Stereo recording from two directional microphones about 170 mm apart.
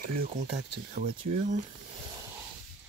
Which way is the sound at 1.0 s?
50° right (ahead or behind).